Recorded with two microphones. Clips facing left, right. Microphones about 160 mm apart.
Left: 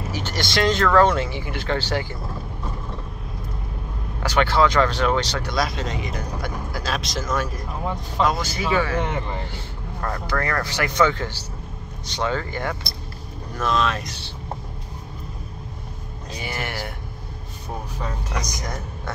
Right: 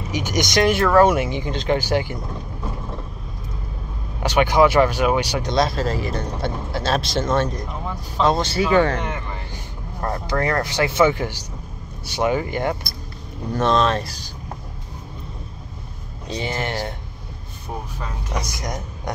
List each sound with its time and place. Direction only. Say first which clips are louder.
0.1 s speech: right 6 dB; 15° right (ahead or behind)
4.2 s speech: right 3 dB; 15° right (ahead or behind)
5.5 s speech: right 6 dB; 25° right (ahead or behind)
5.8 s speech: right 5 dB; 35° right (ahead or behind)
8.7 s speech: right 5 dB; 55° right (ahead or behind)
9.0 s speech: left 2 dB; 20° left (ahead or behind)
9.9 s speech: right 3 dB; 25° right (ahead or behind)
13.6 s speech: right 4 dB; 35° right (ahead or behind)
16.3 s a sound: right 5 dB; 25° right (ahead or behind)
18.6 s speech: right 2 dB; 15° right (ahead or behind)